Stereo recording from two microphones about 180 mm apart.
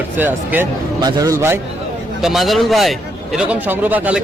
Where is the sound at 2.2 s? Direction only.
Centre (ahead or behind).